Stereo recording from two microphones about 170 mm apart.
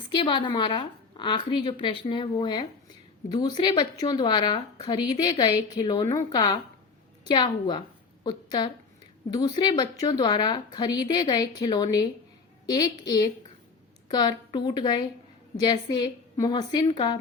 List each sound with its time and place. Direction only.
0.1 s a woman's voice: 30° left (ahead or behind)